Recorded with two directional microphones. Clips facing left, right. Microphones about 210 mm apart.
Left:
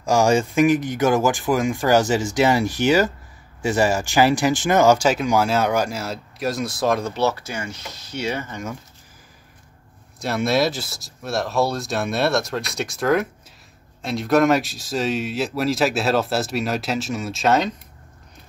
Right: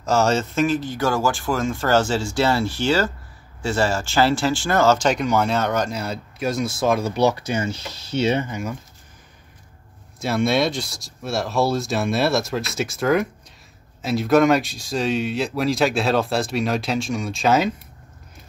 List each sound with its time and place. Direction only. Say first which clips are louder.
0.0 s speech: left 2 dB; 10° left (ahead or behind)
7.2 s speech: right 3 dB; 15° right (ahead or behind)
10.2 s speech: even; centre (ahead or behind)